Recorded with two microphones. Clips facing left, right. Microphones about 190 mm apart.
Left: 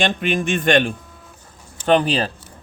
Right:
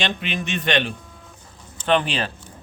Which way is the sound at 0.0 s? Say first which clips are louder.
Left 6 dB; 50° left (ahead or behind).